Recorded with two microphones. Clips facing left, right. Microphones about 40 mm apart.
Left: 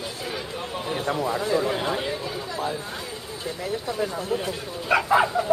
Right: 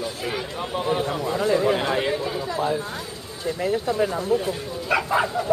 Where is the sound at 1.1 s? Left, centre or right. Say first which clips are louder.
Left 1 dB; centre.